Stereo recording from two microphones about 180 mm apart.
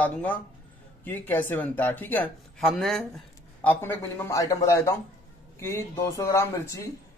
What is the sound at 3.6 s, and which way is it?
Speech, 10° left (ahead or behind).